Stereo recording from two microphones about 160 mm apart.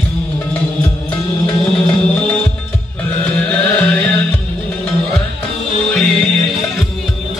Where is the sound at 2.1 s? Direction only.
5° left (ahead or behind).